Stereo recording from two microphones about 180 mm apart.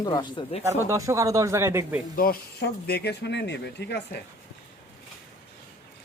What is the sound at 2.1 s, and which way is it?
Speech, 55° left (ahead or behind).